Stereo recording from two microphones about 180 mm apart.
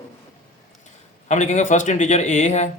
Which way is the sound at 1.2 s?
40° left (ahead or behind).